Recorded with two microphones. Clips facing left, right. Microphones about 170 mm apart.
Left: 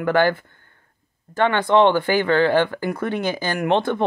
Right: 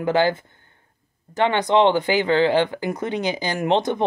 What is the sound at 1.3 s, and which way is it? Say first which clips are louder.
Speech: left 1 dB; 20° right (ahead or behind).